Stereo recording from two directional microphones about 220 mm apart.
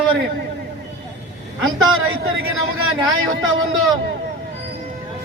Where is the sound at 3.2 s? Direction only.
65° right (ahead or behind).